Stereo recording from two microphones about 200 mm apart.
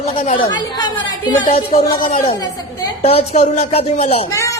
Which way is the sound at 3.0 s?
30° left (ahead or behind).